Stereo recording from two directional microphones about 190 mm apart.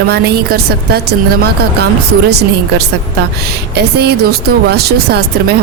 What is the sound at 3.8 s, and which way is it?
Speech, 60° right (ahead or behind).